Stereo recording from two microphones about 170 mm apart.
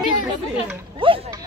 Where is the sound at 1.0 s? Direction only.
30° right (ahead or behind).